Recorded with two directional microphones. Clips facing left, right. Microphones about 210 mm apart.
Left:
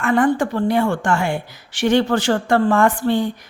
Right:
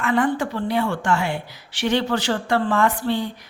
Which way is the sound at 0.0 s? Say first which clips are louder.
Left 4 dB; 50° left (ahead or behind).